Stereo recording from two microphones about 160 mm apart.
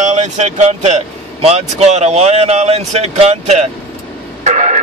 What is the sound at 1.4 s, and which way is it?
Speech, 45° right (ahead or behind).